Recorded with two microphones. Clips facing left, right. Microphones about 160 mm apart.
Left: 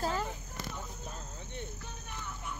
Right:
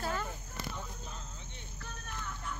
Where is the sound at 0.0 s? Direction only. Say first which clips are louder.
Left 3 dB; 35° left (ahead or behind).